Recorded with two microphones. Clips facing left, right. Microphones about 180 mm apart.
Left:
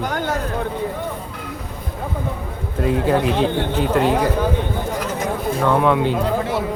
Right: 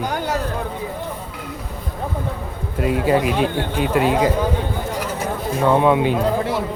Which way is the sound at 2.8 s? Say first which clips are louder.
Even; 10° right (ahead or behind).